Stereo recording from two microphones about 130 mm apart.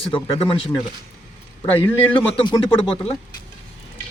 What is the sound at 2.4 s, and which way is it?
Speech, 40° left (ahead or behind).